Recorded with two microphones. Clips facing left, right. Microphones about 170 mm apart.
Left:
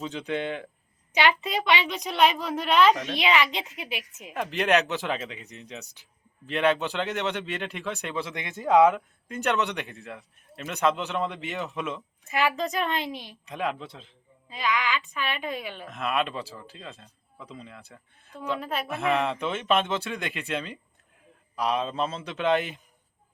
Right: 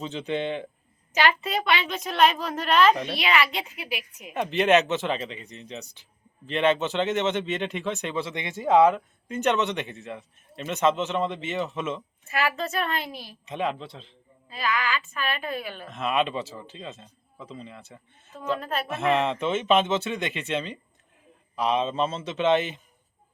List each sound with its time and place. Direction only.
0.0 s a man's voice: centre (ahead or behind)
1.1 s a woman's voice: 15° left (ahead or behind)
2.9 s a man's voice: centre (ahead or behind)
3.2 s a woman's voice: 20° left (ahead or behind)
4.4 s a man's voice: centre (ahead or behind)
8.7 s a woman's voice: 10° left (ahead or behind)
12.3 s a woman's voice: 15° left (ahead or behind)
13.5 s a man's voice: 5° left (ahead or behind)
15.9 s a man's voice: centre (ahead or behind)
18.3 s a woman's voice: 10° left (ahead or behind)
18.9 s a man's voice: centre (ahead or behind)